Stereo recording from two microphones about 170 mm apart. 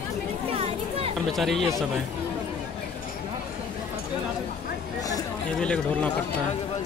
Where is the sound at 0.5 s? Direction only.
35° right (ahead or behind).